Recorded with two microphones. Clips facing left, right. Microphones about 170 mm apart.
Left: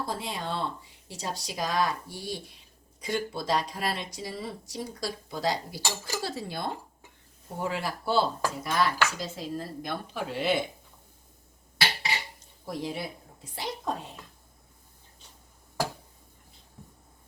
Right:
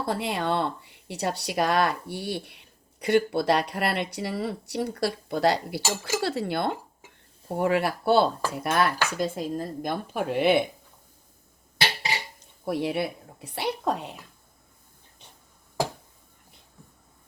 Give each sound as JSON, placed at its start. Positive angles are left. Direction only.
{"t": 0.0, "sound": "speech", "side_deg": -65}
{"t": 9.1, "sound": "speech", "side_deg": -55}
{"t": 12.6, "sound": "a woman's voice", "side_deg": -65}